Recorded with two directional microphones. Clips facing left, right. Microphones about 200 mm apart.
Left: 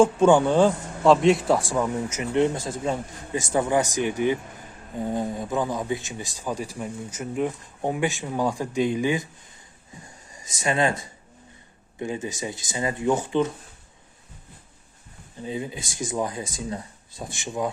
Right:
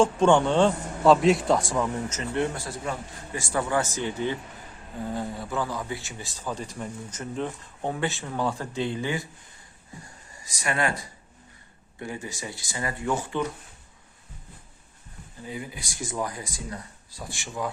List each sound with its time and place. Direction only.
0.0 s speech: 5° left (ahead or behind)
15.4 s speech: 20° left (ahead or behind)